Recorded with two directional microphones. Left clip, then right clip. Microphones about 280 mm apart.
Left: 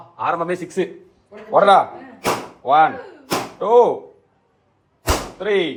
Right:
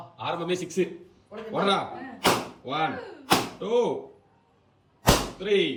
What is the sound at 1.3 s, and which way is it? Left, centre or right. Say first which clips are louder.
A man's voice: left 13 dB; centre.